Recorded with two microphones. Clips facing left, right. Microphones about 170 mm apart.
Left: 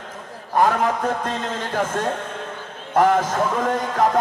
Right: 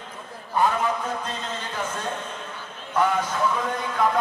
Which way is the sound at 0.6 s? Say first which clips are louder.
Left 4 dB; 85° left.